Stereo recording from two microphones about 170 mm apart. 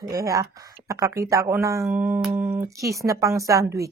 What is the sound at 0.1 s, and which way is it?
Speech, 20° right (ahead or behind).